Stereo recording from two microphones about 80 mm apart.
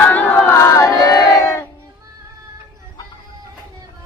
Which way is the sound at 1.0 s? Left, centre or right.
Left.